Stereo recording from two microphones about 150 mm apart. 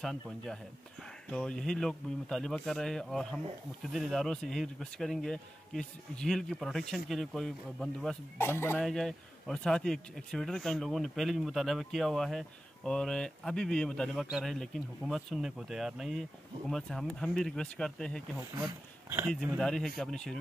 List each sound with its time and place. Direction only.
0.0 s a man's voice: centre (ahead or behind)
8.4 s speech: 15° left (ahead or behind)
8.7 s a man's voice: 5° left (ahead or behind)
19.0 s speech: 15° right (ahead or behind)
19.6 s a man's voice: 5° left (ahead or behind)